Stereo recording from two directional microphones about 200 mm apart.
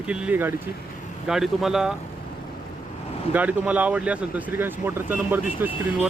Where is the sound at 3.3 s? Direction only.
5° right (ahead or behind).